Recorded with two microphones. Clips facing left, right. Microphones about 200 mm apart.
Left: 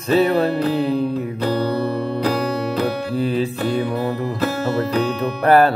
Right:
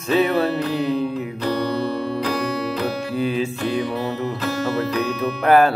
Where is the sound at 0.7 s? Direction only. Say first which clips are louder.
Left 2 dB; 30° left (ahead or behind).